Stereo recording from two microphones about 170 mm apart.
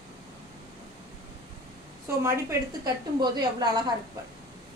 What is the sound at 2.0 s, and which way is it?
A woman's voice, 15° right (ahead or behind).